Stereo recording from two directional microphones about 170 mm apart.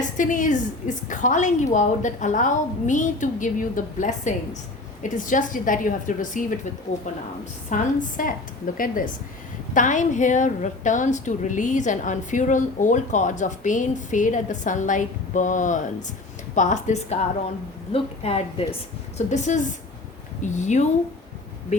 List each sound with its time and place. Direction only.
0.2 s a woman's voice: 50° left (ahead or behind)
7.7 s a woman's voice: 50° left (ahead or behind)